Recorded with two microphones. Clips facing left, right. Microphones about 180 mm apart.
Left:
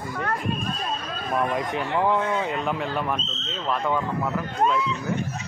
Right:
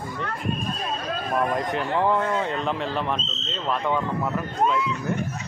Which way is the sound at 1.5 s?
5° left (ahead or behind).